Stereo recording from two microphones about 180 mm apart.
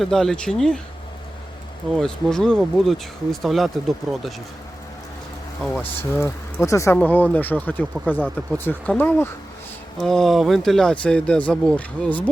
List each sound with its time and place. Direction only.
0.0 s speech: centre (ahead or behind)
2.0 s speech: 5° left (ahead or behind)
5.6 s speech: centre (ahead or behind)
6.0 s speech: 10° left (ahead or behind)